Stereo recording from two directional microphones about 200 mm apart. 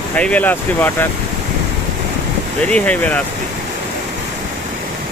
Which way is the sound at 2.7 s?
5° left (ahead or behind).